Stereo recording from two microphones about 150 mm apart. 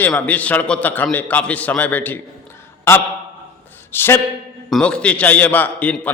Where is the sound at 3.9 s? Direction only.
15° left (ahead or behind).